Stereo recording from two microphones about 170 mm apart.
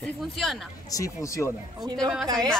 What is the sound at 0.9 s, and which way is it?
Speech, 20° left (ahead or behind).